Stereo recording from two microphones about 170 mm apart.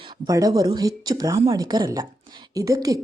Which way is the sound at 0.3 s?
20° right (ahead or behind).